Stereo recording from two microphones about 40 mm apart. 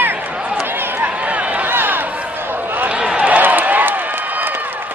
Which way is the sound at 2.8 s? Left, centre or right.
Right.